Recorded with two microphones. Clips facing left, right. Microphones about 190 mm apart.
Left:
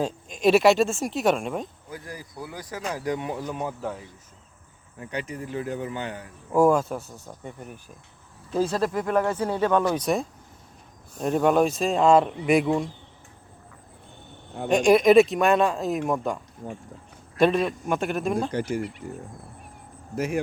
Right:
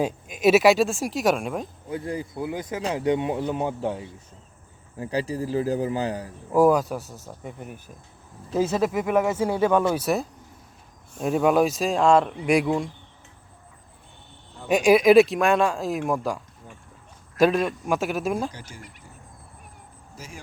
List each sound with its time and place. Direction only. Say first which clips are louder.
0.0 s speech: right 1 dB; 5° right (ahead or behind)
1.9 s a man's voice: right 9 dB; 25° right (ahead or behind)
6.5 s speech: right 1 dB; 5° right (ahead or behind)
14.7 s speech: right 1 dB; 5° right (ahead or behind)
17.4 s speech: right 1 dB; centre (ahead or behind)
18.5 s speech: left 16 dB; 60° left (ahead or behind)
20.1 s speech: left 16 dB; 60° left (ahead or behind)